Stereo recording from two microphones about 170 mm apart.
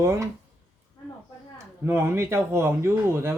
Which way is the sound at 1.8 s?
15° right (ahead or behind).